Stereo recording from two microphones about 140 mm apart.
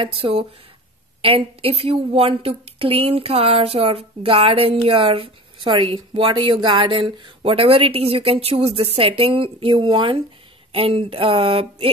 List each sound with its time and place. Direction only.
0.0 s a woman's voice: 40° right (ahead or behind)